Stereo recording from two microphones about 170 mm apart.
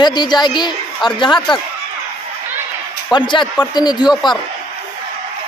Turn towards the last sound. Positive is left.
turn(degrees=25)  # may be behind; listen again after turning